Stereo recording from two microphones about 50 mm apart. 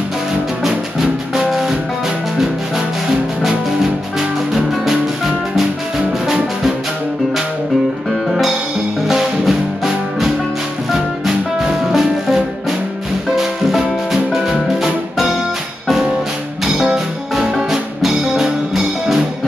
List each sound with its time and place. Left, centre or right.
0.7 s music: centre
4.2 s music: centre
6.2 s music: centre
8.3 s music: centre
11.6 s music: centre
16.6 s music: centre